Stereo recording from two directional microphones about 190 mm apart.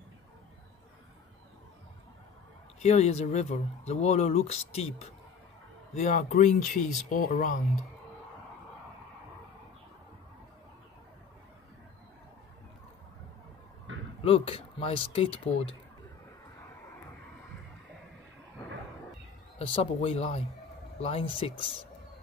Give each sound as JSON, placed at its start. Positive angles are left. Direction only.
{"t": 2.8, "sound": "speech", "side_deg": 35}
{"t": 5.9, "sound": "speech", "side_deg": 40}
{"t": 13.9, "sound": "a sound", "side_deg": -80}
{"t": 14.2, "sound": "speech", "side_deg": 30}
{"t": 19.6, "sound": "speech", "side_deg": 30}